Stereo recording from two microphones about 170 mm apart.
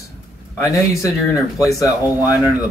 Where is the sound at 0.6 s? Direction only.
20° left (ahead or behind).